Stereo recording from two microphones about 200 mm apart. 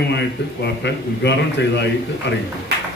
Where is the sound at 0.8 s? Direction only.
60° left (ahead or behind).